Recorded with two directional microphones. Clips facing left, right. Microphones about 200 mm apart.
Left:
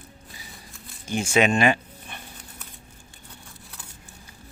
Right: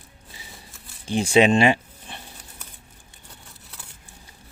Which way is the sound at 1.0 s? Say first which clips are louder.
Right 4 dB; 30° right (ahead or behind).